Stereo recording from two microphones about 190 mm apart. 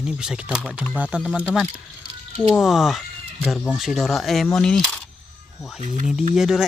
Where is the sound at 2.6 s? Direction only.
Centre (ahead or behind).